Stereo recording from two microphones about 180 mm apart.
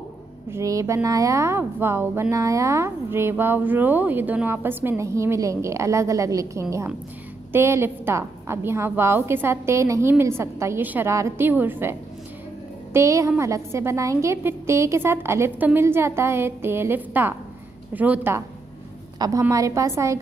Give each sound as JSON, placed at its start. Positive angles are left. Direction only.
{"t": 0.5, "sound": "a woman's voice", "side_deg": -15}
{"t": 19.1, "sound": "a woman's voice", "side_deg": -20}